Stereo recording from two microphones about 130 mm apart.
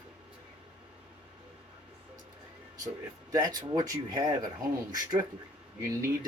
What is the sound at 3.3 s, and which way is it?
Speech, 30° right (ahead or behind).